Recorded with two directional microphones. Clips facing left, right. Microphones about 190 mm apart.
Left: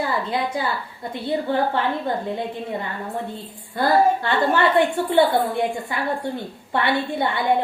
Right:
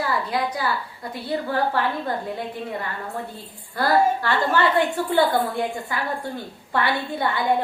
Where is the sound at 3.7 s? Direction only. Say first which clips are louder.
Left 2 dB; 20° left (ahead or behind).